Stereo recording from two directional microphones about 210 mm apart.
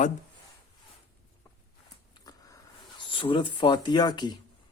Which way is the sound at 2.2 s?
15° left (ahead or behind).